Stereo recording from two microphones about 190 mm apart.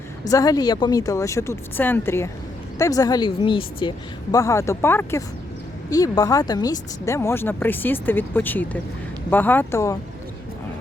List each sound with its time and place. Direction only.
0.3 s a woman's voice: 20° left (ahead or behind)